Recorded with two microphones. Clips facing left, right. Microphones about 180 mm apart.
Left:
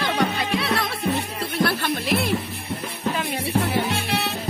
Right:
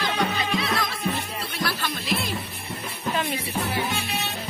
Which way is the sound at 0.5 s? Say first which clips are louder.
Left 2 dB; 65° left (ahead or behind).